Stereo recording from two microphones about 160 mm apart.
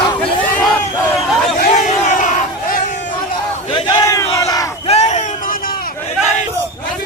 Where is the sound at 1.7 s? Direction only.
50° left (ahead or behind).